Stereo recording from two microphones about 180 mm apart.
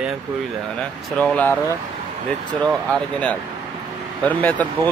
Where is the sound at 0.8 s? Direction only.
5° left (ahead or behind).